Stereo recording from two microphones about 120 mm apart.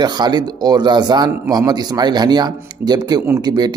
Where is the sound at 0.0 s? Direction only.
35° right (ahead or behind).